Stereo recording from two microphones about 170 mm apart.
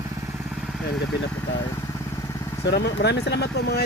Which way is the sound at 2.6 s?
85° left.